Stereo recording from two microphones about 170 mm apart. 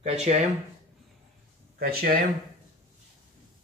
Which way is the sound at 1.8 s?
60° right (ahead or behind).